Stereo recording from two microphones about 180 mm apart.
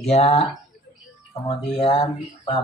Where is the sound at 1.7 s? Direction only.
30° left (ahead or behind).